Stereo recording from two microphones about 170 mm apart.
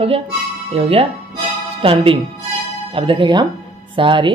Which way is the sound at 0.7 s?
35° right (ahead or behind).